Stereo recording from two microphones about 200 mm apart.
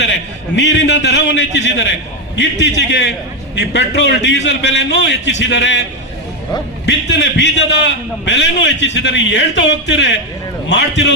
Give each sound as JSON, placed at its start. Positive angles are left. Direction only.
{"t": 0.5, "sound": "a man's voice", "side_deg": 60}
{"t": 6.8, "sound": "a man's voice", "side_deg": 65}